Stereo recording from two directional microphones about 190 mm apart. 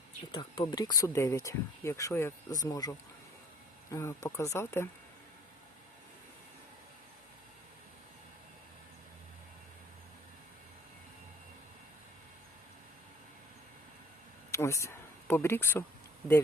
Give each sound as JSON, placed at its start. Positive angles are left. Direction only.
{"t": 0.3, "sound": "speech", "side_deg": 20}
{"t": 3.9, "sound": "speech", "side_deg": 15}
{"t": 14.5, "sound": "a sound", "side_deg": 15}